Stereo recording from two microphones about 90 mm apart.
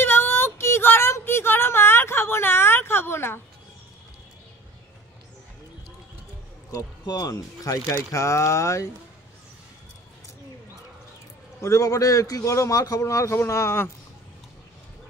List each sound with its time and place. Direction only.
0.0 s a sound: 25° left (ahead or behind)
6.7 s a man's voice: 40° left (ahead or behind)
11.6 s a man's voice: 35° left (ahead or behind)